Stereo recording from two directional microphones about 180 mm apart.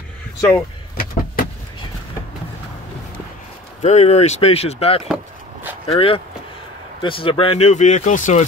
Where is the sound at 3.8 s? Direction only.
40° left (ahead or behind).